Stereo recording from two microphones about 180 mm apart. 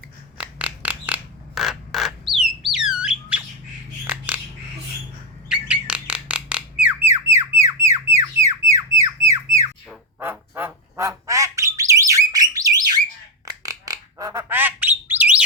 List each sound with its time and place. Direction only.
0.3 s filing: 5° right (ahead or behind)
2.7 s squawk: 5° right (ahead or behind)
4.0 s bird: 10° right (ahead or behind)
5.5 s bird: 5° right (ahead or behind)
10.2 s squawk: 10° right (ahead or behind)
13.4 s bird: 20° right (ahead or behind)